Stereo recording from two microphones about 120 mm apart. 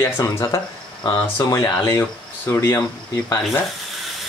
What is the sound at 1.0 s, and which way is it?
Speech, 45° left (ahead or behind).